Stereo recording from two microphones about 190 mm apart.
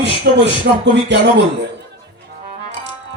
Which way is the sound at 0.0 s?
65° right (ahead or behind).